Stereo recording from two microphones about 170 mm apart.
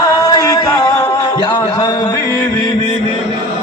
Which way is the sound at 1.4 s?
25° left (ahead or behind).